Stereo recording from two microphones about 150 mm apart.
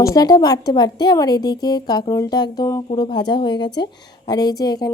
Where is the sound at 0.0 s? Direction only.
25° left (ahead or behind).